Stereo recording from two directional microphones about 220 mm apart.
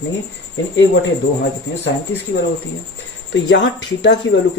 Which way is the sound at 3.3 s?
55° left (ahead or behind).